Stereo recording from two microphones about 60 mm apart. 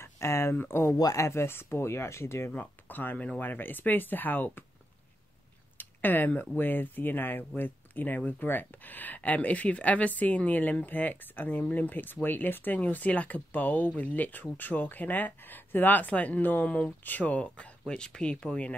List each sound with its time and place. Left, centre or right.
0.0 s speech: left
0.9 s speech: left
1.2 s speech: left
2.5 s speech: left
5.8 s a sound: left
6.5 s speech: left